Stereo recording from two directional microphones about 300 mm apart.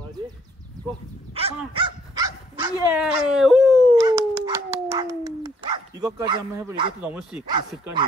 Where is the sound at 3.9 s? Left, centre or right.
Centre.